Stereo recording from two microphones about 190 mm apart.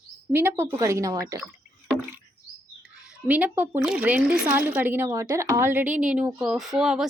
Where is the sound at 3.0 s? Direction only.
10° right (ahead or behind).